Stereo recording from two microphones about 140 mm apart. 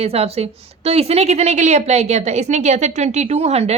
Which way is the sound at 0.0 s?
45° right (ahead or behind).